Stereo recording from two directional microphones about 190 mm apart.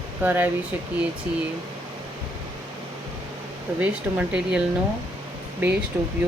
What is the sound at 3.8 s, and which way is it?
Speech, 5° right (ahead or behind).